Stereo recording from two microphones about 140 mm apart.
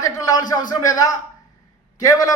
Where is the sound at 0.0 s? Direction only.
25° left (ahead or behind).